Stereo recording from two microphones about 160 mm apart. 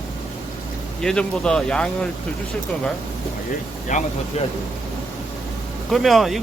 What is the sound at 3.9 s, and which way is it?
Speech, 50° left (ahead or behind).